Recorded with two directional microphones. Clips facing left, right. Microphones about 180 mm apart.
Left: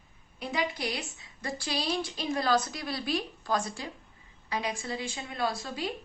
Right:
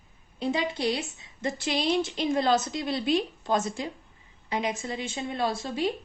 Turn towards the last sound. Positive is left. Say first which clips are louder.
# right 4 dB
turn(degrees=-25)  # may be behind; listen again after turning